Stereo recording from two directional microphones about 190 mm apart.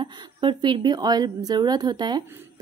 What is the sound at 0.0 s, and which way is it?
A woman's voice, 25° right (ahead or behind).